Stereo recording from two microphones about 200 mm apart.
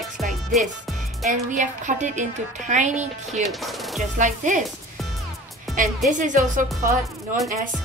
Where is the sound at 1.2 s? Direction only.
35° right (ahead or behind).